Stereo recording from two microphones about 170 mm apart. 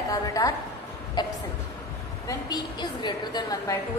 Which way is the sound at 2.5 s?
25° left (ahead or behind).